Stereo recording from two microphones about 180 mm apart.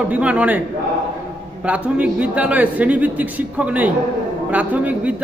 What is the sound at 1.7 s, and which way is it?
A man's voice, 5° right (ahead or behind).